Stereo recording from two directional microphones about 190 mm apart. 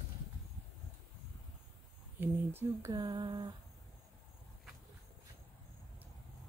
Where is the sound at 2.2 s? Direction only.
10° right (ahead or behind).